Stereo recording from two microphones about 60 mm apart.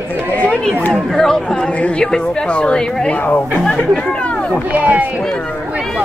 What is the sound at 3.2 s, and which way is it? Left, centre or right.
Speech, left.